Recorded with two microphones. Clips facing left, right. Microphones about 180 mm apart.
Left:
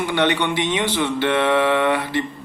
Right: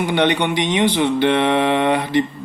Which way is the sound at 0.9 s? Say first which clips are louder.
Right 3 dB; 15° right (ahead or behind).